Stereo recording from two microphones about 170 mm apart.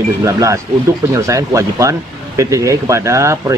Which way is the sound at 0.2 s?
20° right (ahead or behind).